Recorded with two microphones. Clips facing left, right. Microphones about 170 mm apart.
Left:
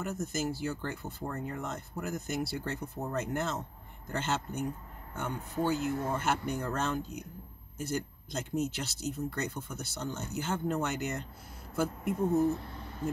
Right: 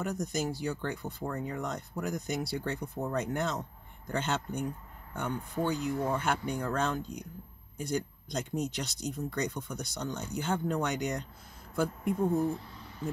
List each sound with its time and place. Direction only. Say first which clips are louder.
0.0 s speech: right 1 dB; 5° left (ahead or behind)